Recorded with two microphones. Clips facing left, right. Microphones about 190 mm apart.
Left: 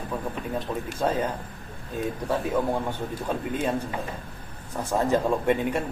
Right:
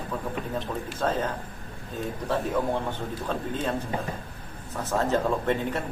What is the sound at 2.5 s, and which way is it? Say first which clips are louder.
A man's voice: left 1 dB; 10° left (ahead or behind).